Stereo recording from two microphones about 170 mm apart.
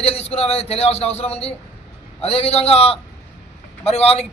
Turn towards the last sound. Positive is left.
turn(degrees=35)  # may be behind; listen again after turning